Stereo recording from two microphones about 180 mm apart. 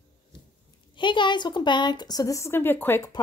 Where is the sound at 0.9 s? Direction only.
25° left (ahead or behind).